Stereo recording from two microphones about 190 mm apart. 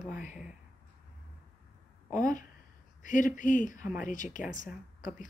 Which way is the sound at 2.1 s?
45° left (ahead or behind).